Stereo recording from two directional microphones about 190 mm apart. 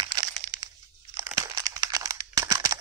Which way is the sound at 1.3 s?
20° right (ahead or behind).